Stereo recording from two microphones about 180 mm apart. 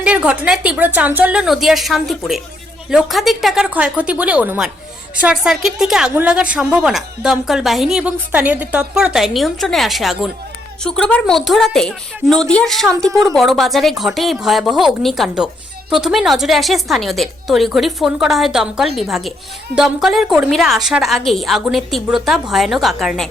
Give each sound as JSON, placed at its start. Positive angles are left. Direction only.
{"t": 0.0, "sound": "a woman's voice", "side_deg": -5}
{"t": 13.1, "sound": "speech", "side_deg": -20}
{"t": 13.3, "sound": "a woman's voice", "side_deg": 0}